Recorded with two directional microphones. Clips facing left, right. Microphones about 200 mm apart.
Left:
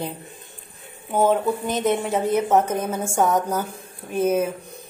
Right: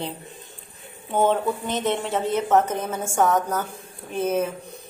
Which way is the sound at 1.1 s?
5° left (ahead or behind).